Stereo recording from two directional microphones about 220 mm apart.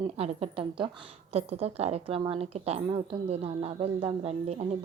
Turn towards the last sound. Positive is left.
turn(degrees=-30)  # may be behind; listen again after turning